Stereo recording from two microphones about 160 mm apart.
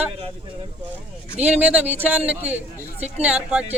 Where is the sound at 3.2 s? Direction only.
5° right (ahead or behind).